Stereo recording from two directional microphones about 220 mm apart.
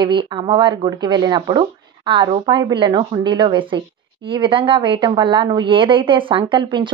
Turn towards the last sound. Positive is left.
turn(degrees=-20)  # may be behind; listen again after turning